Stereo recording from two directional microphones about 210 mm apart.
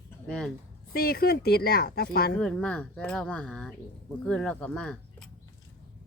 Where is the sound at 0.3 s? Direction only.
5° left (ahead or behind).